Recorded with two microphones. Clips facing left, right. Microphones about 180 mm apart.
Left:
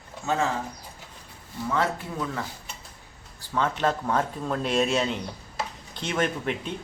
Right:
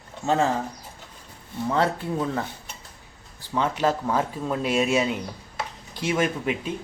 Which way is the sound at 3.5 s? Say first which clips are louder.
Right 2 dB; 10° right (ahead or behind).